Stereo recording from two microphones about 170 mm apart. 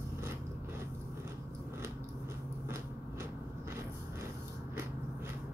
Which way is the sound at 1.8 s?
15° right (ahead or behind).